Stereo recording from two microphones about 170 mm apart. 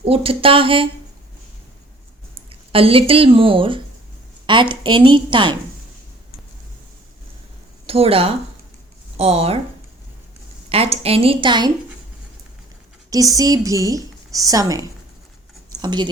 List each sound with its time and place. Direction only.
0.0 s a woman's voice: 35° right (ahead or behind)
2.5 s a woman's voice: 35° right (ahead or behind)
7.9 s a woman's voice: 35° right (ahead or behind)
10.7 s a woman's voice: 35° right (ahead or behind)
13.1 s a woman's voice: 20° right (ahead or behind)
15.7 s a sound: 25° right (ahead or behind)